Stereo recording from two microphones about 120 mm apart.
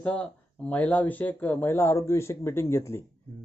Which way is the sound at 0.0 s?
10° left (ahead or behind).